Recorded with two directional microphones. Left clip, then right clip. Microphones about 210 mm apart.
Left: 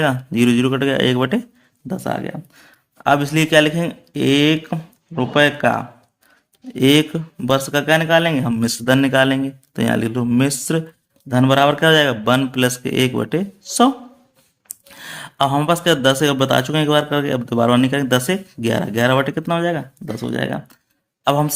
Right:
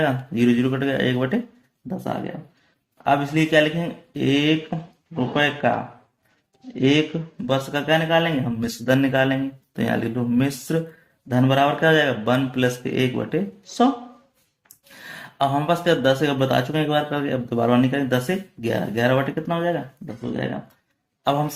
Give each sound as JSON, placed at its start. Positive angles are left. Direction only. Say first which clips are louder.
{"t": 0.0, "sound": "speech", "louder": "left 4 dB", "side_deg": 35}
{"t": 15.0, "sound": "speech", "louder": "left 4 dB", "side_deg": 35}
{"t": 21.3, "sound": "speech", "louder": "left 4 dB", "side_deg": 35}